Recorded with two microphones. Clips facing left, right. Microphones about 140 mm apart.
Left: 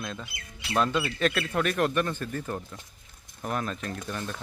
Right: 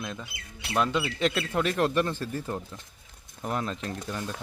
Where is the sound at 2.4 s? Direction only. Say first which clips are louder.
Even; 10° right (ahead or behind).